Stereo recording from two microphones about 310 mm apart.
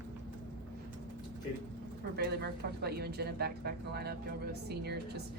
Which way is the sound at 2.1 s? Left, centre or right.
Right.